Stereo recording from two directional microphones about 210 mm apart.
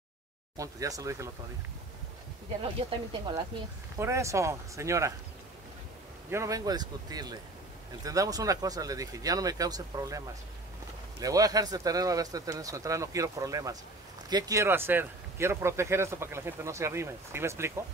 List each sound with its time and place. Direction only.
0.6 s speech: 15° right (ahead or behind)
2.6 s speech: 25° right (ahead or behind)
6.3 s speech: 15° right (ahead or behind)